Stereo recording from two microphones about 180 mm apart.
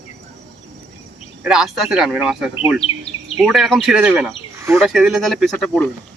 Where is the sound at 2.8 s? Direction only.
35° left (ahead or behind).